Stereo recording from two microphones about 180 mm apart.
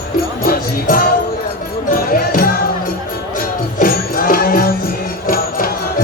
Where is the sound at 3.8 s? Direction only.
55° left (ahead or behind).